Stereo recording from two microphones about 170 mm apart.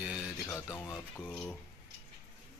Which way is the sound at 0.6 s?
20° left (ahead or behind).